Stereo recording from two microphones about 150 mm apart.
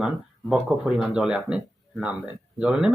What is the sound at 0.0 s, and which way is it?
Speech, 5° right (ahead or behind).